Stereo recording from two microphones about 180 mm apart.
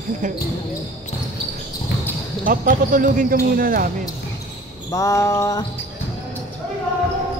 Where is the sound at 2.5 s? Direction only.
50° right (ahead or behind).